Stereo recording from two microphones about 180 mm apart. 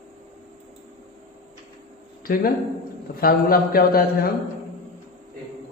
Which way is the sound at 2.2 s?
55° left (ahead or behind).